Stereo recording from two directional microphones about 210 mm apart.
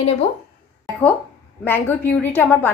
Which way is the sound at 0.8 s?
5° left (ahead or behind).